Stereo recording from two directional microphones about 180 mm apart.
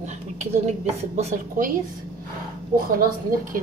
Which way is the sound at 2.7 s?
50° right (ahead or behind).